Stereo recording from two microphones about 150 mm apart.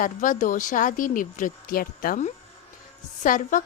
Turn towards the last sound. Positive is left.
turn(degrees=60)  # may be behind; listen again after turning